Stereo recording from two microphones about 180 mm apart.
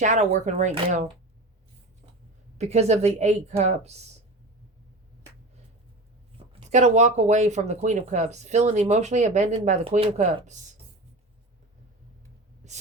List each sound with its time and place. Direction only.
0.0 s speech: 40° right (ahead or behind)
2.6 s speech: 40° right (ahead or behind)
6.3 s speech: 35° right (ahead or behind)
12.6 s a sound: 40° right (ahead or behind)